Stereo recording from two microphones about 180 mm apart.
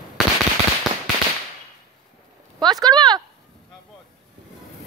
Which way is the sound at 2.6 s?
25° right (ahead or behind).